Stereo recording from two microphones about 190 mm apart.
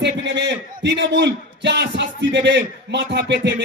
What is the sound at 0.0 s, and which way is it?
A man's voice, 65° right (ahead or behind).